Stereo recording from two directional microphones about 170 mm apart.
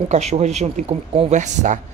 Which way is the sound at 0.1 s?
40° right (ahead or behind).